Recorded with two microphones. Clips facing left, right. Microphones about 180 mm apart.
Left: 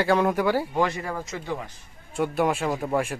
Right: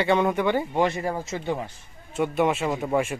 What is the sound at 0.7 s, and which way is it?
Speech, 25° right (ahead or behind).